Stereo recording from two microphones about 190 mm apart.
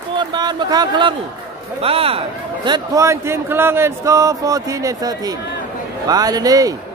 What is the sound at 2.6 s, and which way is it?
Speech, 20° right (ahead or behind).